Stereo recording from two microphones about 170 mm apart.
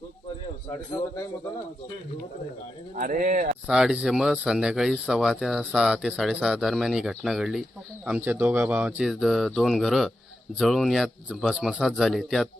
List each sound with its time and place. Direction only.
2.9 s speech: 50° right (ahead or behind)
3.7 s speech: 5° right (ahead or behind)